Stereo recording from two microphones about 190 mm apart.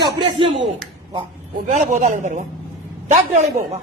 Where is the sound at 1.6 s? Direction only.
40° right (ahead or behind).